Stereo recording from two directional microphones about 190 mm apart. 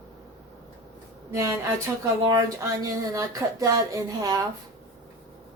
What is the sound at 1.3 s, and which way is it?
Speech, 15° right (ahead or behind).